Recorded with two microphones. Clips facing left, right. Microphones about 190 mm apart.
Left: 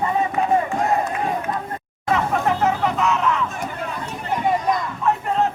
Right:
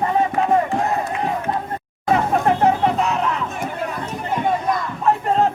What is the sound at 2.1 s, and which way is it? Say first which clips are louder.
Music: right 3 dB; 35° right (ahead or behind).